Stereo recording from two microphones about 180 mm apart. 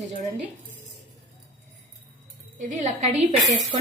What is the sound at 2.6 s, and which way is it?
Speech, 40° right (ahead or behind).